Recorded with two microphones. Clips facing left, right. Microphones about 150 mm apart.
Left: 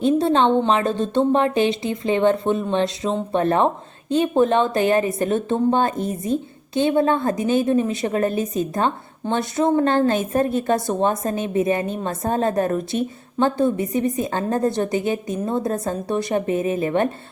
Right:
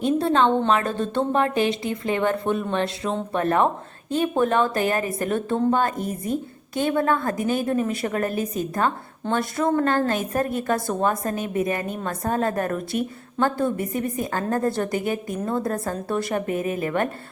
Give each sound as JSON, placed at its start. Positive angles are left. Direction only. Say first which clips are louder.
{"t": 0.0, "sound": "a woman's voice", "louder": "left 3 dB", "side_deg": 20}